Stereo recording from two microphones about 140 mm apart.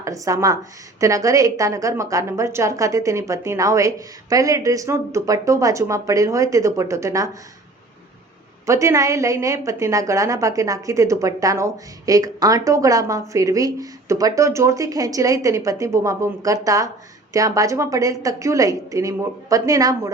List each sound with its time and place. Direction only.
0.0 s a woman's voice: 20° right (ahead or behind)
8.6 s a woman's voice: 20° right (ahead or behind)